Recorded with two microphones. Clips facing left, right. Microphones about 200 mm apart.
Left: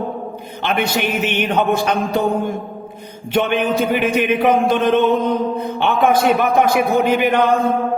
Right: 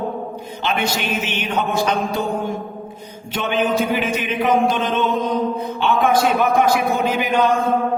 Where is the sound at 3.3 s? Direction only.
60° left (ahead or behind).